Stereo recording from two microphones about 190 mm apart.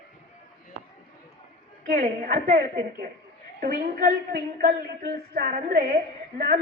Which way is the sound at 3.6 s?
50° right (ahead or behind).